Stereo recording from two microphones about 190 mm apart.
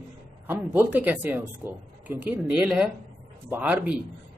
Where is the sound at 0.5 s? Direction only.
10° right (ahead or behind).